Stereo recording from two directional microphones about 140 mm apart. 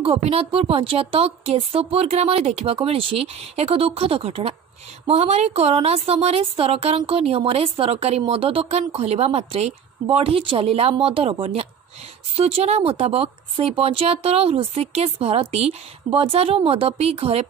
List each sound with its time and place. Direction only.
0.0 s a woman's voice: 45° right (ahead or behind)